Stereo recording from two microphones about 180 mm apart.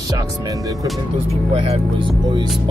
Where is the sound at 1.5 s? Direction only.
30° right (ahead or behind).